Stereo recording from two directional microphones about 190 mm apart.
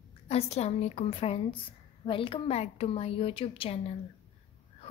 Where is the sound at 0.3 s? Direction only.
35° left (ahead or behind).